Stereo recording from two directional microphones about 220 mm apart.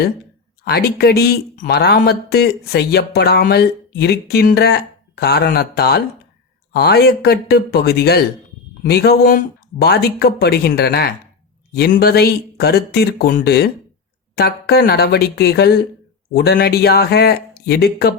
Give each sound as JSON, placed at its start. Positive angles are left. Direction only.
{"t": 0.6, "sound": "a man's voice", "side_deg": 45}